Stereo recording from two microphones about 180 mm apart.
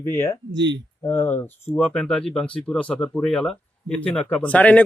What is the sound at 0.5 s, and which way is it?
Speech, 80° right.